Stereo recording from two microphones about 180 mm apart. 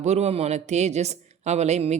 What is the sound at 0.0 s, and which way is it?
A woman's voice, 40° right (ahead or behind).